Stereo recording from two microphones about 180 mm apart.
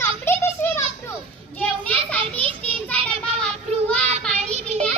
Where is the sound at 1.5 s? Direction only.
5° left (ahead or behind).